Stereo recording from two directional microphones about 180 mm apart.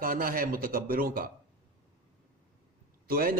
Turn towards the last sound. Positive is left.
turn(degrees=-55)  # may be behind; listen again after turning